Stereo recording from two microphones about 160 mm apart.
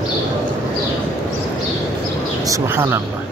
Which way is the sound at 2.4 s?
20° right (ahead or behind).